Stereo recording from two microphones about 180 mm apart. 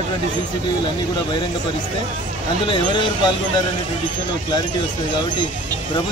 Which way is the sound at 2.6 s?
25° left (ahead or behind).